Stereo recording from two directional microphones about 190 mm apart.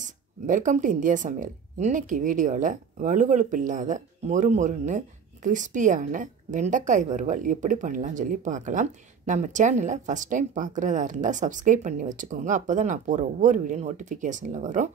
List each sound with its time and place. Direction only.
0.0 s speech: 40° right (ahead or behind)